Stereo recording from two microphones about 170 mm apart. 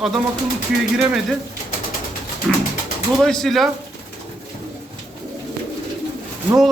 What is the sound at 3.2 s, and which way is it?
Speech, 5° left (ahead or behind).